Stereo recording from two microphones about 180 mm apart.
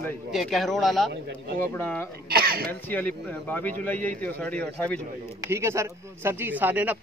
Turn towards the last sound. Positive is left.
turn(degrees=-10)  # may be behind; listen again after turning